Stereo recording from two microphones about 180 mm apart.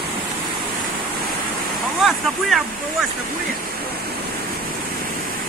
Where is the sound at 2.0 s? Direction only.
Centre (ahead or behind).